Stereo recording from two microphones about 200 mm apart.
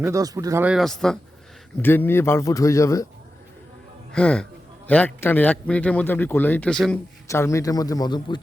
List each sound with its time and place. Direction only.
0.0 s a man's voice: 15° right (ahead or behind); by 3.1 s 15° left (ahead or behind)
4.1 s a man's voice: 5° left (ahead or behind)
7.3 s a man's voice: 15° left (ahead or behind)